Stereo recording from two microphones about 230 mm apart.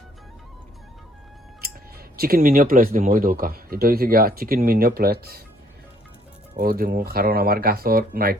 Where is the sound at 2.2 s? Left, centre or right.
Right.